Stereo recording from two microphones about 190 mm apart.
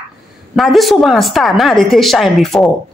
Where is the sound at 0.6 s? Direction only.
Centre (ahead or behind).